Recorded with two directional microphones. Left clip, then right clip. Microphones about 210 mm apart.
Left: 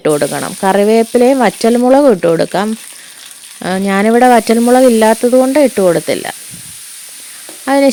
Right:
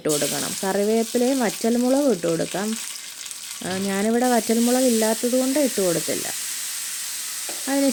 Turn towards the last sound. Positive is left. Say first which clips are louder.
# left 12 dB
turn(degrees=40)  # may be behind; listen again after turning